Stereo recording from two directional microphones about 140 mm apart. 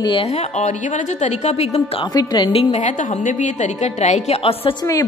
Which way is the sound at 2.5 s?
55° left (ahead or behind).